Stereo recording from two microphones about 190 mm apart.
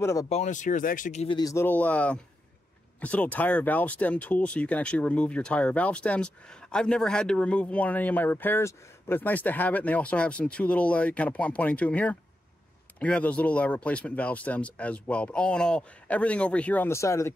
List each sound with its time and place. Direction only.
0.0 s speech: 15° left (ahead or behind)
0.3 s speech: 40° left (ahead or behind)
1.4 s speech: 15° left (ahead or behind)